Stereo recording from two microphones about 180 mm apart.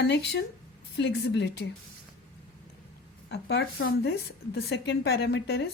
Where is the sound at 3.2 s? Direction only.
75° left (ahead or behind).